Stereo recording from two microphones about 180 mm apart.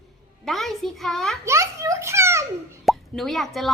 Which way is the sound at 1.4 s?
15° right (ahead or behind).